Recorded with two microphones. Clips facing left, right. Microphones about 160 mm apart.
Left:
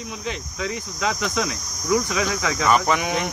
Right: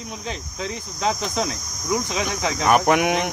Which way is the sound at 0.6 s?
30° right (ahead or behind).